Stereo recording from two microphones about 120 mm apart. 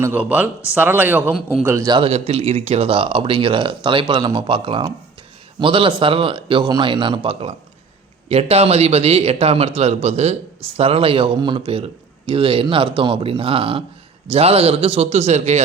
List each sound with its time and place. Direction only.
0.0 s speech: 15° right (ahead or behind)
1.6 s a man's voice: 25° right (ahead or behind)
1.9 s a man's voice: 50° right (ahead or behind); by 15.6 s 65° right (ahead or behind)